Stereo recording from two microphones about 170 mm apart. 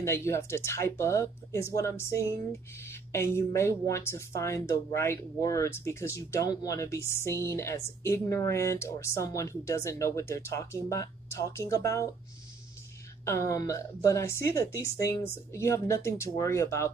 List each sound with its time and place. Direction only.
0.0 s speech: 15° left (ahead or behind)
13.2 s speech: 20° left (ahead or behind)